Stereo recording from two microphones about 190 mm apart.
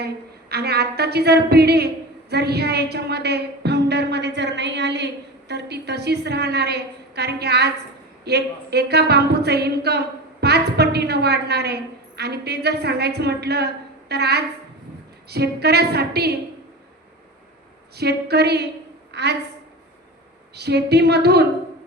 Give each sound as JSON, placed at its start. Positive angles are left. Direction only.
{"t": 0.0, "sound": "a woman's voice", "side_deg": -60}
{"t": 17.9, "sound": "a woman's voice", "side_deg": -60}
{"t": 20.6, "sound": "a woman's voice", "side_deg": -60}